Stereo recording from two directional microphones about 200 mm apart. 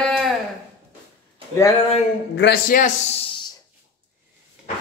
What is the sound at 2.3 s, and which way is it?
Speech, 60° left (ahead or behind).